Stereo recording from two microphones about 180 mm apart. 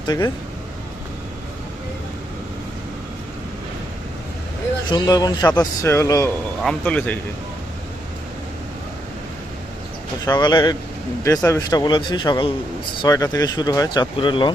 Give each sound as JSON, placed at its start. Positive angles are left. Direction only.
{"t": 4.9, "sound": "a man's voice", "side_deg": 25}
{"t": 6.6, "sound": "a man's voice", "side_deg": 5}
{"t": 10.2, "sound": "speech", "side_deg": 20}